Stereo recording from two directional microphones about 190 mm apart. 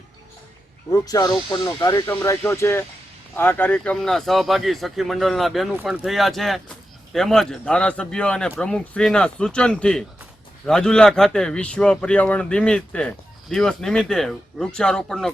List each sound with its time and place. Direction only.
0.9 s speech: 20° left (ahead or behind)